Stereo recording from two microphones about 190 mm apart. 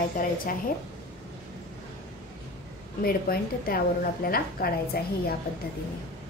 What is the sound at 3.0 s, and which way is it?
A woman's voice, 50° left (ahead or behind).